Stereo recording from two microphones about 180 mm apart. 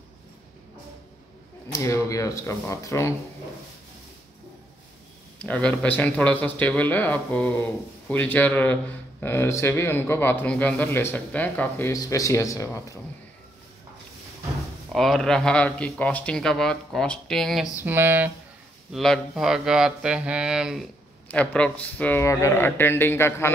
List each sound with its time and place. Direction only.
1.7 s a man's voice: 15° left (ahead or behind)
5.4 s a man's voice: 5° left (ahead or behind)
11.9 s a man's voice: 20° left (ahead or behind)
14.9 s speech: centre (ahead or behind)
17.8 s speech: 10° right (ahead or behind)
18.9 s speech: centre (ahead or behind)
21.3 s a man's voice: 5° left (ahead or behind)